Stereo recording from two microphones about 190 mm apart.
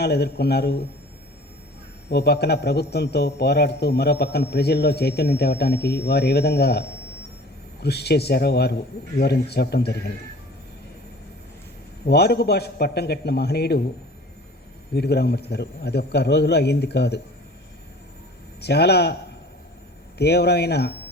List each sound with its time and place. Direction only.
0.0 s a man's voice: 60° left (ahead or behind)
2.0 s a man's voice: 60° left (ahead or behind)
12.0 s a man's voice: 60° left (ahead or behind)
14.9 s a man's voice: 60° left (ahead or behind)
18.6 s a man's voice: 60° left (ahead or behind)
20.1 s a man's voice: 60° left (ahead or behind)